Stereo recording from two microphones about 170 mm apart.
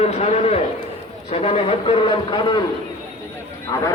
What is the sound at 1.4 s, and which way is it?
Speech, 35° left (ahead or behind).